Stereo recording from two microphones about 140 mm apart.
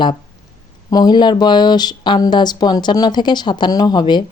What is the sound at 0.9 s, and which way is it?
Speech, 30° left (ahead or behind).